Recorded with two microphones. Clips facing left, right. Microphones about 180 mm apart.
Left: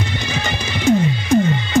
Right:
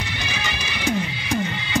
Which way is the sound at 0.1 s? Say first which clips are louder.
Left 6 dB; 50° left (ahead or behind).